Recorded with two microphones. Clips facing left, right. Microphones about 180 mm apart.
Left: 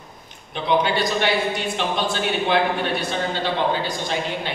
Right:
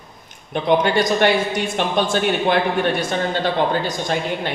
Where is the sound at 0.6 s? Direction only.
45° right (ahead or behind).